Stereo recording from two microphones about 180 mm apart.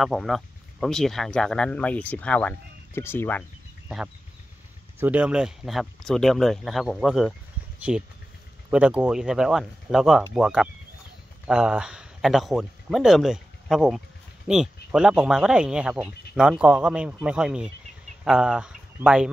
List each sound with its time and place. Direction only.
0.0 s speech: centre (ahead or behind)
5.0 s speech: 5° right (ahead or behind)